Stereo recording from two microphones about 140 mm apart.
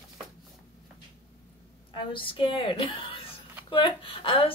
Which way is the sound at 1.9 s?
35° left (ahead or behind).